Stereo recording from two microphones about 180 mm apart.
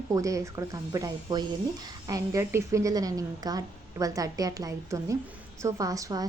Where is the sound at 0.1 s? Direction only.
20° right (ahead or behind).